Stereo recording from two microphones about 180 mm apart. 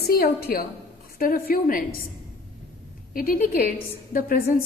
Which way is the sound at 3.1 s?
50° left (ahead or behind).